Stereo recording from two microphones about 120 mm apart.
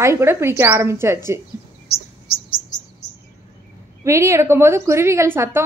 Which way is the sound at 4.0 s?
25° right (ahead or behind).